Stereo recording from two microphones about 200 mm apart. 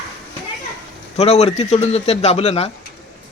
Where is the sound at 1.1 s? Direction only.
30° left (ahead or behind).